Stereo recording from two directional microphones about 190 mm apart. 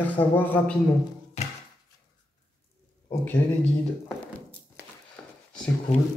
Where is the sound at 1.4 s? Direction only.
35° left (ahead or behind).